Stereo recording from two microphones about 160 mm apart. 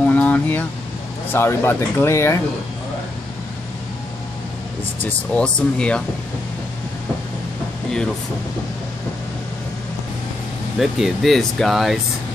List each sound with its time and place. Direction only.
0.0 s air conditioning: 10° left (ahead or behind)
1.3 s speech: 15° left (ahead or behind)
5.0 s speech: 5° left (ahead or behind)
10.8 s speech: centre (ahead or behind)